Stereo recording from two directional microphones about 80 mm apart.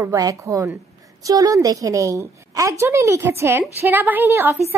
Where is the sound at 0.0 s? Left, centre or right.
Right.